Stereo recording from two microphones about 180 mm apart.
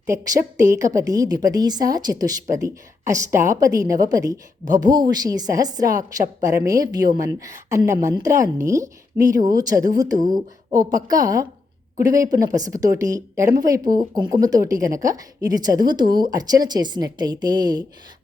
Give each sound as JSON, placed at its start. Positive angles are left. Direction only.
{"t": 0.5, "sound": "a woman's voice", "side_deg": -15}